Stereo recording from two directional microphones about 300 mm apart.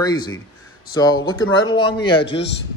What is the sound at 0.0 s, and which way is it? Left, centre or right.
Speech, centre.